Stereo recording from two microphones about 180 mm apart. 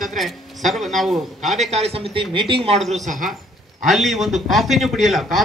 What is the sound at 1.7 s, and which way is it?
Speech, 35° right (ahead or behind).